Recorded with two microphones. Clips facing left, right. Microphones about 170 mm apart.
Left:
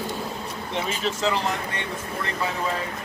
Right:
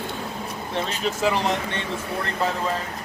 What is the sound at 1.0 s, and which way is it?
Speech, 10° right (ahead or behind).